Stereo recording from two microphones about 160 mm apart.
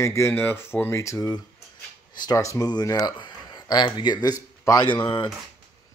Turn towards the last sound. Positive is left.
turn(degrees=30)  # may be behind; listen again after turning